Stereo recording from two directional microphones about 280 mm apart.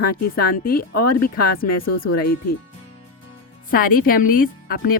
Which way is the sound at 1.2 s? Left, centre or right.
Left.